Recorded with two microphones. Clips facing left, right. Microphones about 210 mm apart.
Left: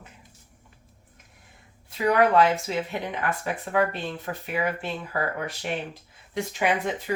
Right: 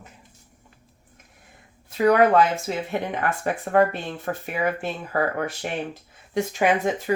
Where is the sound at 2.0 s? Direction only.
45° right (ahead or behind).